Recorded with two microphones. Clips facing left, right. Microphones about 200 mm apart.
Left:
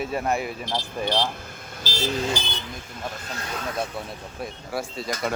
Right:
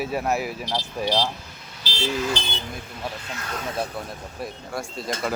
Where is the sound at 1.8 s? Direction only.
45° left (ahead or behind).